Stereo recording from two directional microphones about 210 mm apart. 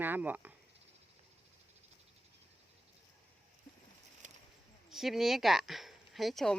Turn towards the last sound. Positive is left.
turn(degrees=0)  # may be behind; listen again after turning